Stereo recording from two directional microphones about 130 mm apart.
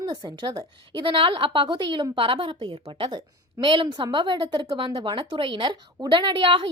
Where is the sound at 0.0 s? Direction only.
35° right (ahead or behind).